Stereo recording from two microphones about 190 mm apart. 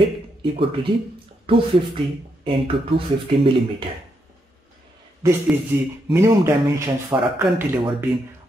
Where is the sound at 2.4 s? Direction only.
30° right (ahead or behind).